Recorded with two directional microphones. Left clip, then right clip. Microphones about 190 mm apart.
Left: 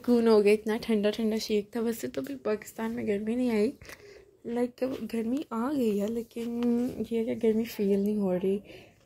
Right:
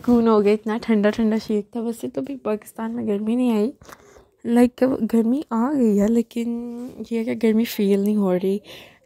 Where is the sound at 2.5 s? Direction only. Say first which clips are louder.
Right 4 dB; 5° right (ahead or behind).